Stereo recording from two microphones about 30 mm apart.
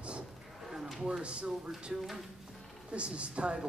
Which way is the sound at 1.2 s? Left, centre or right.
Right.